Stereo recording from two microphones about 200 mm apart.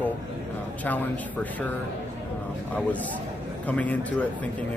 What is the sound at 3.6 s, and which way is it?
Speech, 5° left (ahead or behind).